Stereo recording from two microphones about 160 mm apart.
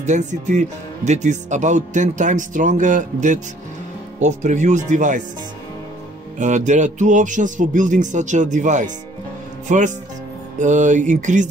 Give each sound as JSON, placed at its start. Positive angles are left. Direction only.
{"t": 0.0, "sound": "speech", "side_deg": -50}
{"t": 6.3, "sound": "speech", "side_deg": -50}